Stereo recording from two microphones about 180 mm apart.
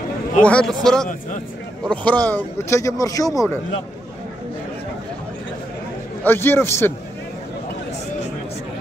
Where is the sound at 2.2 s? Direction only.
10° left (ahead or behind).